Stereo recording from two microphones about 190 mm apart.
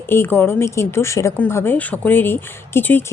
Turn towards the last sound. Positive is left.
turn(degrees=10)  # may be behind; listen again after turning